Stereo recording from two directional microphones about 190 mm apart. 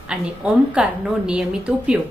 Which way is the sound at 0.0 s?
5° right (ahead or behind).